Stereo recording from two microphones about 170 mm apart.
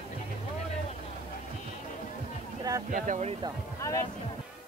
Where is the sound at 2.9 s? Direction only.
45° right (ahead or behind).